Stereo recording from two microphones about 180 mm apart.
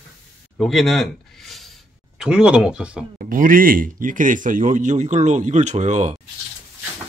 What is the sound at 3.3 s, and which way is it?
Speech, 50° right (ahead or behind).